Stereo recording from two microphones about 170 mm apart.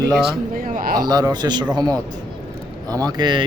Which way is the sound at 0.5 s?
55° right (ahead or behind).